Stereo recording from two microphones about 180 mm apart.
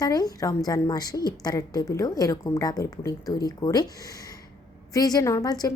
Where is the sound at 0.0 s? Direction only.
20° left (ahead or behind).